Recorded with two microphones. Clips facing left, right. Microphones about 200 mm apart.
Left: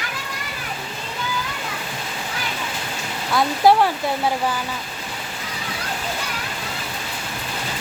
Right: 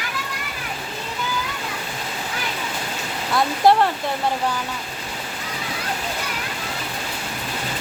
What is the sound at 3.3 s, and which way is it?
Speech, centre (ahead or behind).